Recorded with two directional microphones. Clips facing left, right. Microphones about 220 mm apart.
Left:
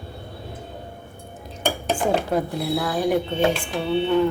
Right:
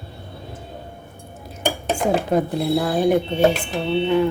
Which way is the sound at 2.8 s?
30° right (ahead or behind).